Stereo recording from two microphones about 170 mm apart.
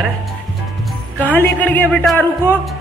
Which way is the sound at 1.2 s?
10° left (ahead or behind).